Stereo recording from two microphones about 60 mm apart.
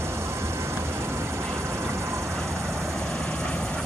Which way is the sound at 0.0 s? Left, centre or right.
Right.